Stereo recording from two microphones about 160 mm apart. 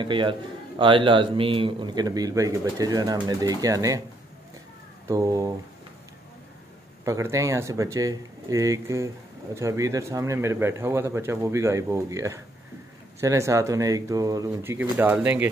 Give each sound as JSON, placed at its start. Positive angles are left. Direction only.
{"t": 0.0, "sound": "a man's voice", "side_deg": -30}
{"t": 5.0, "sound": "a man's voice", "side_deg": -20}
{"t": 7.1, "sound": "a man's voice", "side_deg": -20}